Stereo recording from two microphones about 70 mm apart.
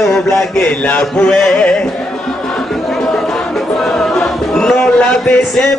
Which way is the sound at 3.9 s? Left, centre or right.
Centre.